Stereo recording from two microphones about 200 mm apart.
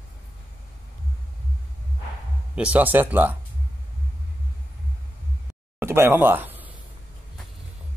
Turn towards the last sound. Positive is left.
turn(degrees=-10)  # may be behind; listen again after turning